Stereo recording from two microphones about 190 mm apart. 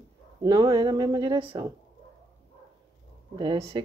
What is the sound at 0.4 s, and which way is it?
Speech, 20° right (ahead or behind).